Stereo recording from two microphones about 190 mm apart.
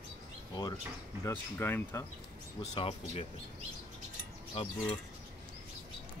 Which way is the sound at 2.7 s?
30° left (ahead or behind).